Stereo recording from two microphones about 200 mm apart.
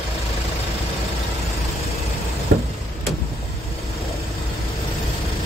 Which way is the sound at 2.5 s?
50° right (ahead or behind).